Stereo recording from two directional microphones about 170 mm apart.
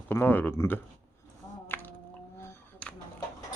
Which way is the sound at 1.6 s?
10° left (ahead or behind).